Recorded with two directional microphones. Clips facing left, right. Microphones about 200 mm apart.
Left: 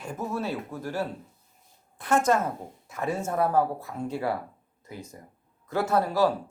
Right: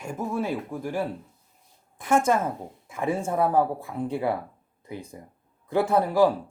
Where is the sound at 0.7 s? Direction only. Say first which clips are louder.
Right 2 dB; 15° right (ahead or behind).